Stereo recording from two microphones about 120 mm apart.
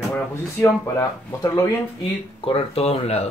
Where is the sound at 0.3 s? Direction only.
20° left (ahead or behind).